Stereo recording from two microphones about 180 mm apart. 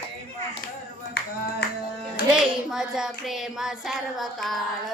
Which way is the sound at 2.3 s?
5° right (ahead or behind).